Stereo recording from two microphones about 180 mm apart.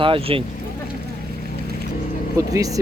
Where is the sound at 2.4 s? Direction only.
20° right (ahead or behind).